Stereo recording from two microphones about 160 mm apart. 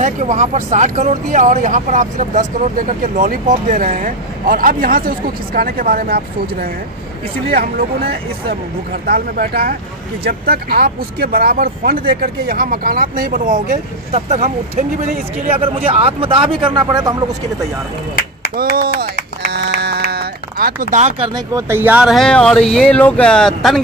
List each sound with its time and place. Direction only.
0.0 s speech: 45° right (ahead or behind); by 6.7 s 70° right (ahead or behind)
9.0 s speech: 65° right (ahead or behind); by 15.1 s 50° right (ahead or behind)
15.5 s a man's voice: 35° right (ahead or behind)
18.6 s speech: 65° right (ahead or behind)
19.5 s sheep: 90° right; by 21.1 s 55° right (ahead or behind)
21.5 s speech: 15° right (ahead or behind); by 23.8 s centre (ahead or behind)